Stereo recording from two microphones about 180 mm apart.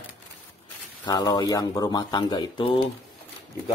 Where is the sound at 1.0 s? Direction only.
20° left (ahead or behind).